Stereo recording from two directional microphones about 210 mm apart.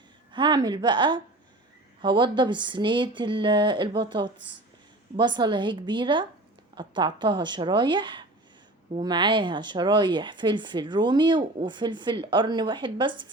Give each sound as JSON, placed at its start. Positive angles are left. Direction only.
{"t": 0.3, "sound": "speech", "side_deg": -20}